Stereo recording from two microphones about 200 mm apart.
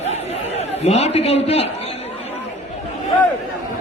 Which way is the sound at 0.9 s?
30° left (ahead or behind).